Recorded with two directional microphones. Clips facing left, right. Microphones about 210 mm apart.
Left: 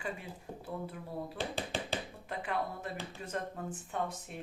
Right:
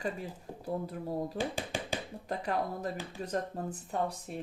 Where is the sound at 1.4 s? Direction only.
15° right (ahead or behind).